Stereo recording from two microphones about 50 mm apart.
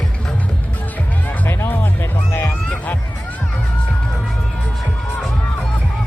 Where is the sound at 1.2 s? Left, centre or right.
Left.